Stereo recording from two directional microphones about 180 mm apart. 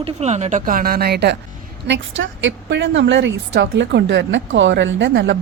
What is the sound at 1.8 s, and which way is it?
Speech, 85° right.